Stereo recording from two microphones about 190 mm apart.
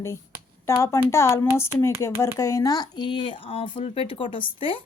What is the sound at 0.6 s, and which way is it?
A woman's voice, 15° left (ahead or behind).